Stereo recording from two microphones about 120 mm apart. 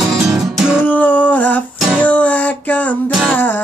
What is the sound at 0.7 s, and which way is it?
Humming, 15° left (ahead or behind).